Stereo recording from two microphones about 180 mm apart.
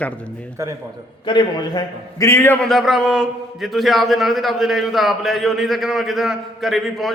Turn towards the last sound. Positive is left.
turn(degrees=0)  # may be behind; listen again after turning